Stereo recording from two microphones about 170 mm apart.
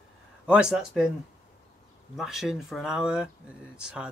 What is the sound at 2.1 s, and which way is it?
Speech, centre (ahead or behind).